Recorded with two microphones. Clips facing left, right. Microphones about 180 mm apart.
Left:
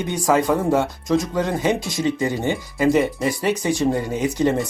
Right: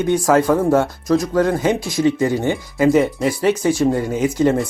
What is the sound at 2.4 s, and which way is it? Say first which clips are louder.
Speech: right 3 dB; 15° left (ahead or behind).